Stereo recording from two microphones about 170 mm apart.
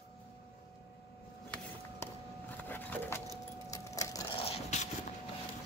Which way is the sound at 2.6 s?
10° left (ahead or behind).